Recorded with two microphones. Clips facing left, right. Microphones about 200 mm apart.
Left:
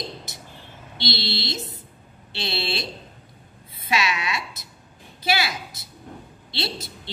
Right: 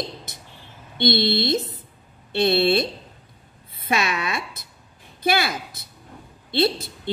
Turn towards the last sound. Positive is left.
turn(degrees=-50)  # may be behind; listen again after turning